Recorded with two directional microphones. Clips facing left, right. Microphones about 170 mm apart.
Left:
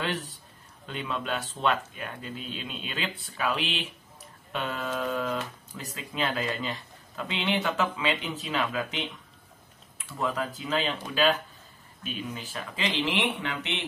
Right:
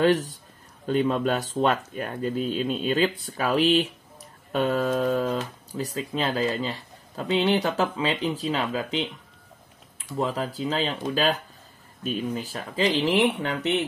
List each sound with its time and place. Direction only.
0.8 s speech: 45° right (ahead or behind)
10.1 s speech: 30° right (ahead or behind)